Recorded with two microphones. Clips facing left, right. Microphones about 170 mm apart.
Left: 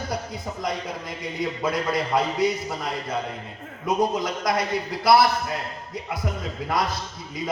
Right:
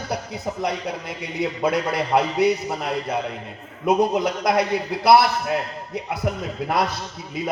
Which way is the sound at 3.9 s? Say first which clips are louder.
Right 4 dB; 65° right (ahead or behind).